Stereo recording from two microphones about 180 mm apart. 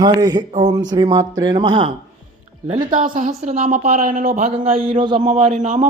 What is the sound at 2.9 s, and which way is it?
A woman's voice, 45° right (ahead or behind).